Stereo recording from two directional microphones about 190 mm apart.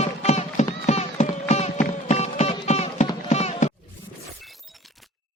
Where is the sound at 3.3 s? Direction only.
35° left (ahead or behind).